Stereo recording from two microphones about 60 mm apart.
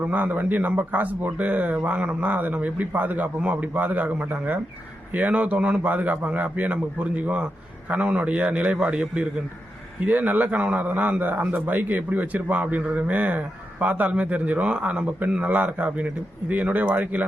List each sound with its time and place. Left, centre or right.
0.0 s a man's voice: right
10.0 s a man's voice: right